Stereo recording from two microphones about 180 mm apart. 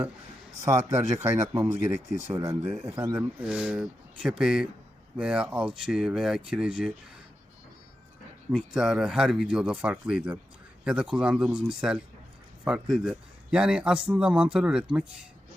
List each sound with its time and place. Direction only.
0.6 s a man's voice: 20° right (ahead or behind)
8.4 s a man's voice: 5° right (ahead or behind)